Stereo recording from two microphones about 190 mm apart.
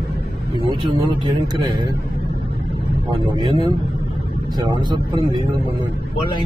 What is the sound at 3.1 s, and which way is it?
A man's voice, 25° right (ahead or behind).